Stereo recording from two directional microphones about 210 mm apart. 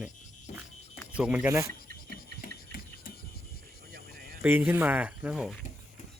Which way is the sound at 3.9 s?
45° right (ahead or behind).